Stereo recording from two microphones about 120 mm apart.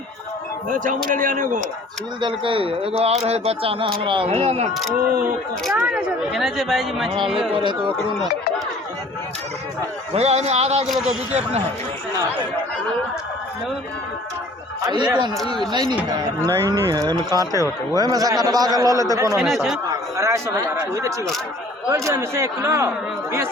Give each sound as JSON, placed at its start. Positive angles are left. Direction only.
{"t": 0.7, "sound": "a man's voice", "side_deg": -90}
{"t": 2.2, "sound": "a man's voice", "side_deg": -45}
{"t": 5.7, "sound": "speech", "side_deg": -10}
{"t": 6.3, "sound": "a man's voice", "side_deg": 0}
{"t": 7.5, "sound": "speech", "side_deg": -40}
{"t": 10.2, "sound": "a man's voice", "side_deg": -60}
{"t": 10.8, "sound": "a man's voice", "side_deg": 0}
{"t": 14.8, "sound": "a man's voice", "side_deg": -35}
{"t": 19.4, "sound": "a man's voice", "side_deg": 0}
{"t": 20.1, "sound": "a man's voice", "side_deg": -25}